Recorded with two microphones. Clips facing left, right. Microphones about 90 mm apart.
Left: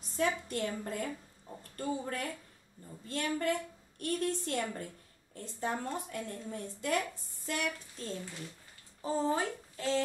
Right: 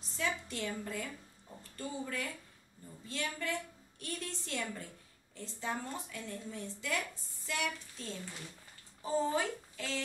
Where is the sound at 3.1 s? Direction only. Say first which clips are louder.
Left 5 dB; 45° left (ahead or behind).